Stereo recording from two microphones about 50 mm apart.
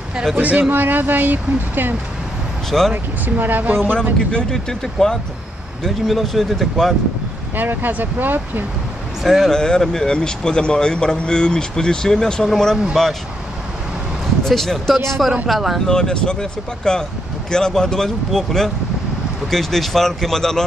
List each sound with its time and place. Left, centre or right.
0.1 s speech: centre
0.4 s speech: right
4.3 s a man's voice: centre
7.5 s speech: right
9.2 s speech: centre
9.5 s a man's voice: centre
14.4 s speech: centre
15.9 s a man's voice: centre